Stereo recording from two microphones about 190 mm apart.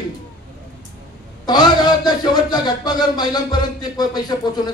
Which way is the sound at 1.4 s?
20° left (ahead or behind).